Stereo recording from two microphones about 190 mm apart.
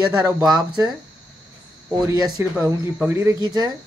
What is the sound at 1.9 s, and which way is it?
A man's voice, 20° right (ahead or behind).